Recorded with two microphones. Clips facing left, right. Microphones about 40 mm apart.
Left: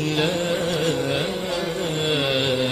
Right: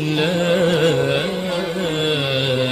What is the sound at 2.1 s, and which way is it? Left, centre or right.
Carnatic music, centre.